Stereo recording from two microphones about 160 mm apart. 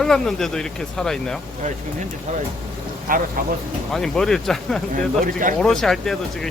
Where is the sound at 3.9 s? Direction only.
5° left (ahead or behind).